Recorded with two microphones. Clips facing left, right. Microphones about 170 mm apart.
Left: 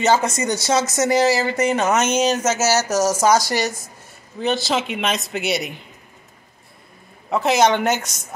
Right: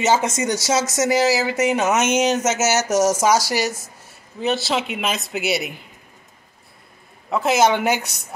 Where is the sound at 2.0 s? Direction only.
20° right (ahead or behind).